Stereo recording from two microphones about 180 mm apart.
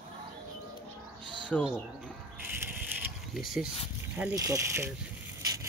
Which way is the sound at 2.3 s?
10° right (ahead or behind).